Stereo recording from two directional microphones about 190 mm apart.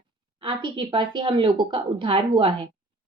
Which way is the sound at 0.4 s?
25° right (ahead or behind).